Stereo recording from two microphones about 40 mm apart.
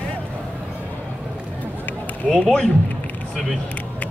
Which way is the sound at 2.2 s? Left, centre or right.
Centre.